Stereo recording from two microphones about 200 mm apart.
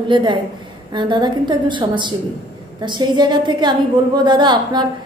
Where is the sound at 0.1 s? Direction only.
25° right (ahead or behind).